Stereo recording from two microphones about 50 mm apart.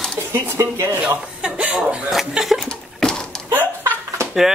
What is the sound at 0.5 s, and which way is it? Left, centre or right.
Speech, right.